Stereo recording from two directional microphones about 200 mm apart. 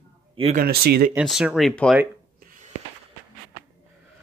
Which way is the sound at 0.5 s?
50° right (ahead or behind).